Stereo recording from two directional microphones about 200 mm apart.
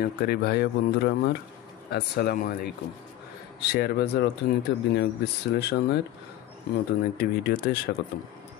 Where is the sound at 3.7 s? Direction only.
55° left (ahead or behind).